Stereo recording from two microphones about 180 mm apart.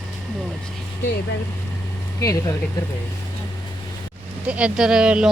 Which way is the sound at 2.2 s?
20° left (ahead or behind).